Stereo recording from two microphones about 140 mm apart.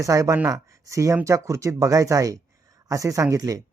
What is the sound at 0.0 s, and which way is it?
A man's voice, 20° right (ahead or behind).